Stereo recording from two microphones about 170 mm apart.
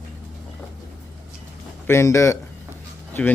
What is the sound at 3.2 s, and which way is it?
Speech, 5° left (ahead or behind).